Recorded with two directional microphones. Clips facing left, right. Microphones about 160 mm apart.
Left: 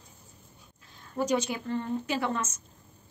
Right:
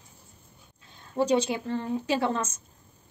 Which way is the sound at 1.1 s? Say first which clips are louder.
Right 4 dB; 30° right (ahead or behind).